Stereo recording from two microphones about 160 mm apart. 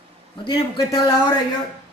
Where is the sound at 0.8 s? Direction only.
20° left (ahead or behind).